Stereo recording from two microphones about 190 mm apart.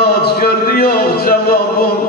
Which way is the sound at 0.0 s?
55° left (ahead or behind).